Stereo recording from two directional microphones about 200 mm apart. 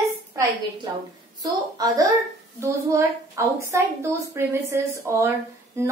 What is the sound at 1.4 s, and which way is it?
A woman's voice, 15° right (ahead or behind).